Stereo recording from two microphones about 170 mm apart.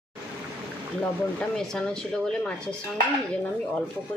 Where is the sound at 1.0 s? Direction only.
5° left (ahead or behind).